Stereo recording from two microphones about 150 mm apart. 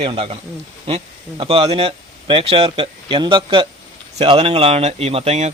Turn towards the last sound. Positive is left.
turn(degrees=-45)  # may be behind; listen again after turning